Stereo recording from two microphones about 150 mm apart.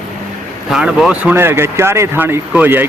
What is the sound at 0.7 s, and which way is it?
Speech, 5° right (ahead or behind).